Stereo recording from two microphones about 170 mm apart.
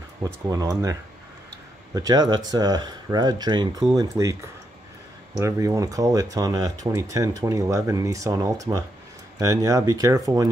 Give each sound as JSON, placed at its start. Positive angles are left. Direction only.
{"t": 0.2, "sound": "speech", "side_deg": -20}
{"t": 2.0, "sound": "speech", "side_deg": -25}